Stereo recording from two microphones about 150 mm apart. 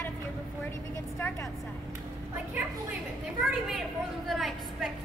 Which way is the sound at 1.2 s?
15° left (ahead or behind).